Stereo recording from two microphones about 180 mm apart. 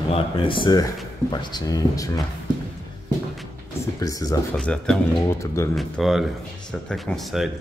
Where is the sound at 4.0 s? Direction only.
20° left (ahead or behind).